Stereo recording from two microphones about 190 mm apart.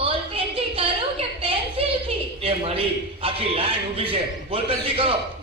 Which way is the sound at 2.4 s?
30° right (ahead or behind).